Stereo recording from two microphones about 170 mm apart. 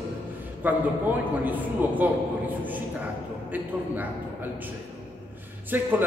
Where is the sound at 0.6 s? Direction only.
10° right (ahead or behind).